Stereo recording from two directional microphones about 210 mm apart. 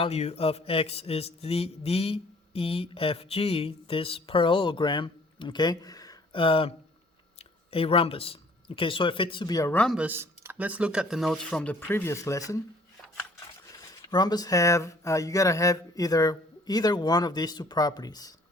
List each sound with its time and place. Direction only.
0.0 s speech: 30° left (ahead or behind)
9.7 s speech: centre (ahead or behind)
13.7 s speech: 20° left (ahead or behind)